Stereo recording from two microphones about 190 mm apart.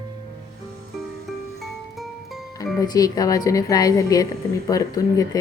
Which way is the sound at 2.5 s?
20° left (ahead or behind).